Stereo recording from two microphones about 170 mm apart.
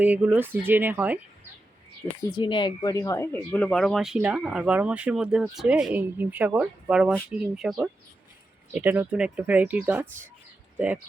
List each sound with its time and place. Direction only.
0.0 s speech: 10° right (ahead or behind)
2.3 s speech: 30° left (ahead or behind)
3.5 s speech: 5° left (ahead or behind)